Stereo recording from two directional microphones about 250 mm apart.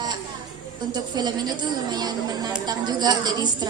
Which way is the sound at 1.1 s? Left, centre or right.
Centre.